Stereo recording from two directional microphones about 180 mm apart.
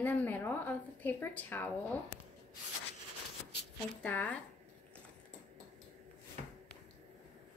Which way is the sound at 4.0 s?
10° left (ahead or behind).